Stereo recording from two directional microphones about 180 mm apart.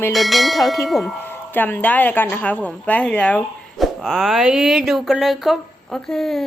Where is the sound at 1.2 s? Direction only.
10° left (ahead or behind).